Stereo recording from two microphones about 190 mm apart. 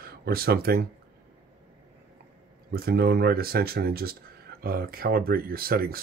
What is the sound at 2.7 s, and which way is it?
Speech, 55° right (ahead or behind).